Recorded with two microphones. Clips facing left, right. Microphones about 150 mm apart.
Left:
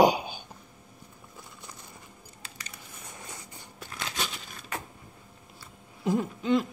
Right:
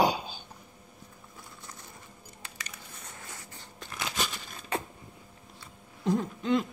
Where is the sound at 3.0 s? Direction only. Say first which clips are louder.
Left 3 dB; 15° left (ahead or behind).